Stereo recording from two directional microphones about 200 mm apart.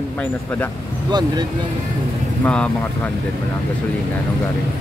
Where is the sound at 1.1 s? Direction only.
20° right (ahead or behind).